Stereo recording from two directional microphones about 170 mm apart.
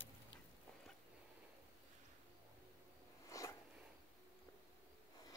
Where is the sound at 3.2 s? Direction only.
20° left (ahead or behind).